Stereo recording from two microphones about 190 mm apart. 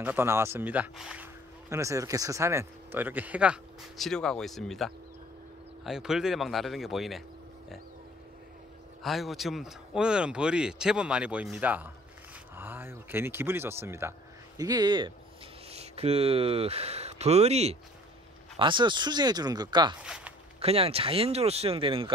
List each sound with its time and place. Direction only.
0.0 s speech: 10° right (ahead or behind)
9.0 s speech: centre (ahead or behind); by 20.0 s 20° right (ahead or behind)
20.0 s zipper: 5° right (ahead or behind)
20.5 s speech: 30° right (ahead or behind)